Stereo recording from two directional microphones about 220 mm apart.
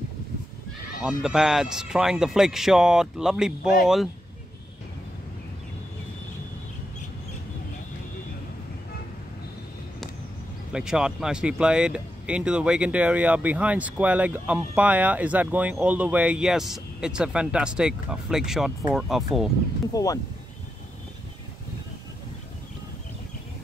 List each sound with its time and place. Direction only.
1.0 s speech: 5° right (ahead or behind)
10.7 s speech: 5° right (ahead or behind)
19.9 s speech: 15° left (ahead or behind)